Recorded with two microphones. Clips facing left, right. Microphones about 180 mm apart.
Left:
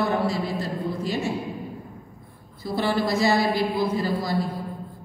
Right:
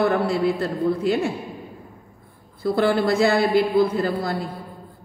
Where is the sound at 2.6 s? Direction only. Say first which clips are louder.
Right 5 dB; 55° right (ahead or behind).